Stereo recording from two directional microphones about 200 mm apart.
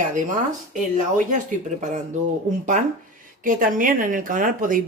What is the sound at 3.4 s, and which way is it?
A woman's voice, 45° right (ahead or behind).